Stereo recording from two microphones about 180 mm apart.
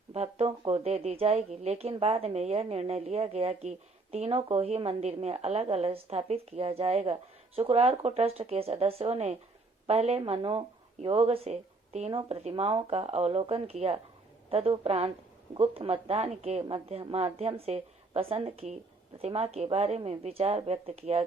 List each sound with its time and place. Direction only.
0.1 s a woman's voice: 35° right (ahead or behind)